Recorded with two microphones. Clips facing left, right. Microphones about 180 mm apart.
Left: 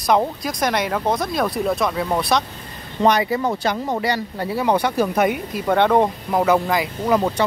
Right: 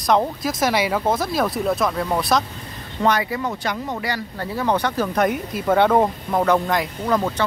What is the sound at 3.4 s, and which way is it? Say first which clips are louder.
Speech: left 4 dB; 35° left (ahead or behind).